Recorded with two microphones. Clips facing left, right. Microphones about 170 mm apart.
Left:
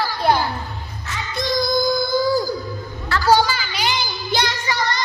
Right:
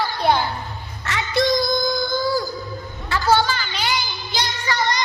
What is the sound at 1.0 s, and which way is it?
Music, 80° right.